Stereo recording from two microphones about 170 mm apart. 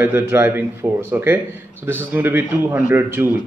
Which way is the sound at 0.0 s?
10° right (ahead or behind).